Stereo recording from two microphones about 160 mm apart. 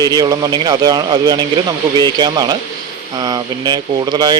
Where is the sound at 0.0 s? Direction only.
25° right (ahead or behind).